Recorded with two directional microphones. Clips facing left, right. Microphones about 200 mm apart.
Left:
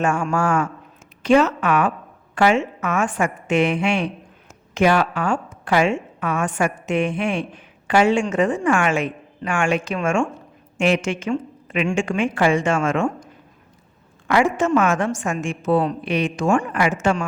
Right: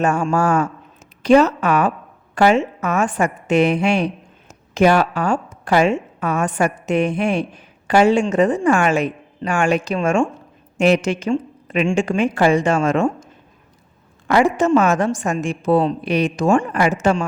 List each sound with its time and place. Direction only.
0.0 s a woman's voice: 40° right (ahead or behind)
14.3 s a woman's voice: 40° right (ahead or behind)